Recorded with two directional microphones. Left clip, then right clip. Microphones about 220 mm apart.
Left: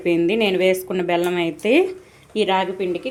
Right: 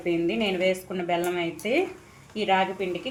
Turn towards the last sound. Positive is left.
turn(degrees=40)  # may be behind; listen again after turning